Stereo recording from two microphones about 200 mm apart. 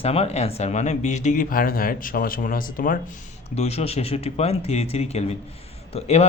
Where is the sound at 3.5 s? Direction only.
30° left (ahead or behind).